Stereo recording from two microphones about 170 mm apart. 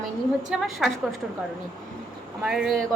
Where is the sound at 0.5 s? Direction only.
5° right (ahead or behind).